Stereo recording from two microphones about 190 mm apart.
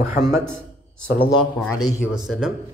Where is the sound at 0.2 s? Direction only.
5° left (ahead or behind).